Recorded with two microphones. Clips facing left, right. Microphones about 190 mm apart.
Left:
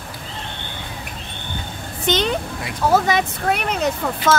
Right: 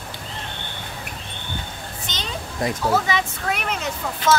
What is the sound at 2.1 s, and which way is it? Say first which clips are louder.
Vehicle: left 14 dB; 65° left (ahead or behind).